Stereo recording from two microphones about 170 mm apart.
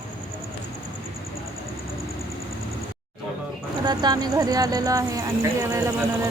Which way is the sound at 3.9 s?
25° right (ahead or behind).